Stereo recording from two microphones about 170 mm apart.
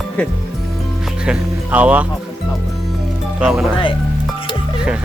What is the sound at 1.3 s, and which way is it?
Speech, 10° right (ahead or behind).